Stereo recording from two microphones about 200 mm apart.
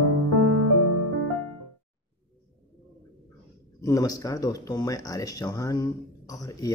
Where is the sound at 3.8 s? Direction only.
15° left (ahead or behind).